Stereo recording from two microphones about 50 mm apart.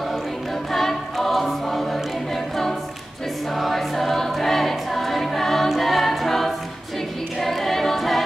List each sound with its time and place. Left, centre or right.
0.7 s choir: centre
7.3 s a capella: centre